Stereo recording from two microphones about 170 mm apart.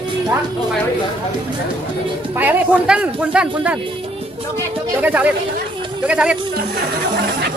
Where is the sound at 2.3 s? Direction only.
10° right (ahead or behind).